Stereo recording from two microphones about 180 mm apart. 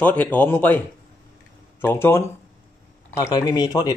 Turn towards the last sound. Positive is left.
turn(degrees=20)  # may be behind; listen again after turning